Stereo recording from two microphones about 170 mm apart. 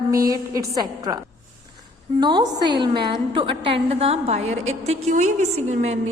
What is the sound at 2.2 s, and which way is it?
A woman's voice, 25° right (ahead or behind).